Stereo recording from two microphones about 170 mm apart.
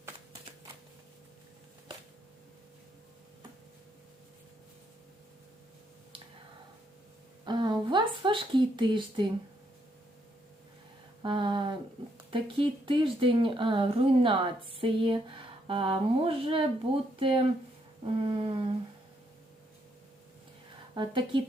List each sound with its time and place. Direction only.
7.4 s a woman's voice: 25° right (ahead or behind)
11.2 s a sound: 30° right (ahead or behind)
12.3 s speech: 30° right (ahead or behind)
20.9 s speech: 30° right (ahead or behind)